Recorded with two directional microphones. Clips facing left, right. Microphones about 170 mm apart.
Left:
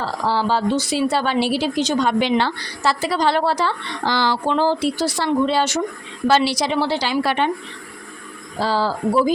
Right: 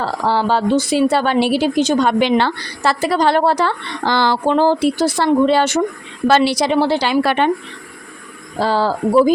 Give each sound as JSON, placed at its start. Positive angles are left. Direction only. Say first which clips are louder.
{"t": 0.0, "sound": "a woman's voice", "louder": "right 3 dB", "side_deg": -55}
{"t": 8.6, "sound": "speech", "louder": "right 3 dB", "side_deg": -55}